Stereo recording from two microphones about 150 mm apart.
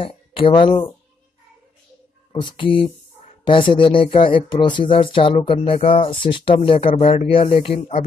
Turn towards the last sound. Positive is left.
turn(degrees=40)  # may be behind; listen again after turning